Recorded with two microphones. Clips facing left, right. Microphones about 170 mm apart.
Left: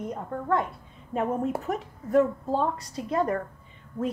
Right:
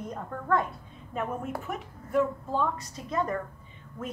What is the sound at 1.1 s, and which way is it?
A woman's voice, 30° left (ahead or behind).